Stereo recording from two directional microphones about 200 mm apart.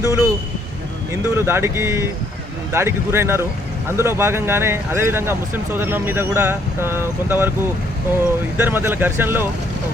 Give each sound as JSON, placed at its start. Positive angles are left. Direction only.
{"t": 0.0, "sound": "speech", "side_deg": -15}
{"t": 8.5, "sound": "speech", "side_deg": -10}